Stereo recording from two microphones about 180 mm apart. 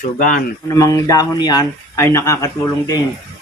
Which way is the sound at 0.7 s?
20° left (ahead or behind).